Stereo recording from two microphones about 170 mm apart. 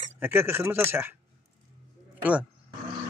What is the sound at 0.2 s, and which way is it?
Speech, 15° right (ahead or behind).